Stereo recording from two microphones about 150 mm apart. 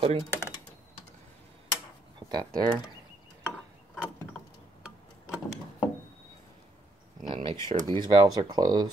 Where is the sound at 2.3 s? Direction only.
25° right (ahead or behind).